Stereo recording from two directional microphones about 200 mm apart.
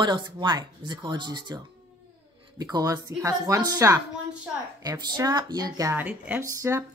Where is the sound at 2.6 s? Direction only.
20° right (ahead or behind).